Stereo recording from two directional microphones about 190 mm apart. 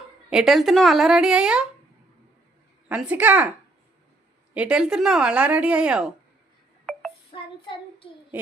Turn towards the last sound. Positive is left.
turn(degrees=30)  # may be behind; listen again after turning